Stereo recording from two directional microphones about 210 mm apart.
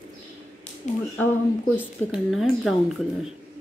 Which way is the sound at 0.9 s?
35° left (ahead or behind).